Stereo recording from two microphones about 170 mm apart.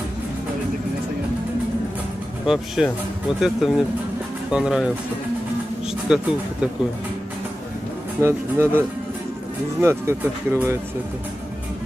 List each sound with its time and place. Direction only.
2.4 s speech: 5° right (ahead or behind)
6.0 s speech: 5° right (ahead or behind)
8.2 s speech: 15° right (ahead or behind)